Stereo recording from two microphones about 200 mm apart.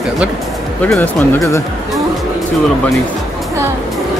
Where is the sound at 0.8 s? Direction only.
5° left (ahead or behind).